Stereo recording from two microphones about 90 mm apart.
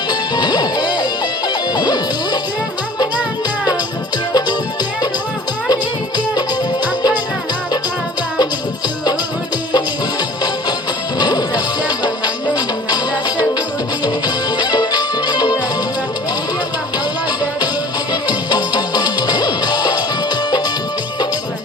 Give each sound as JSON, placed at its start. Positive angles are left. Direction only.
{"t": 0.1, "sound": "music", "side_deg": 50}
{"t": 5.6, "sound": "music", "side_deg": 50}
{"t": 9.7, "sound": "music", "side_deg": 50}
{"t": 11.2, "sound": "smash", "side_deg": 50}
{"t": 11.9, "sound": "music", "side_deg": 55}
{"t": 18.1, "sound": "music", "side_deg": 55}